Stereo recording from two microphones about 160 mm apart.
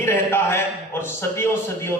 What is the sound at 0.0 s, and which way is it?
A man's voice, 15° left (ahead or behind).